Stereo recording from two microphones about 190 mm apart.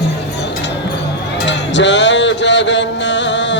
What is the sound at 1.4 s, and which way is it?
Music, 70° left (ahead or behind).